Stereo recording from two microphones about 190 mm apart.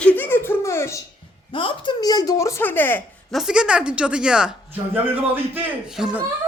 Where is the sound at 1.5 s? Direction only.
25° left (ahead or behind); by 3.0 s 10° left (ahead or behind).